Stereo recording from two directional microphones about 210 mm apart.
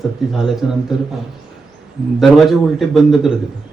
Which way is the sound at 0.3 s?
Centre (ahead or behind).